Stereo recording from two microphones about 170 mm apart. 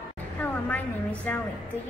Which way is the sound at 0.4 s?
10° left (ahead or behind).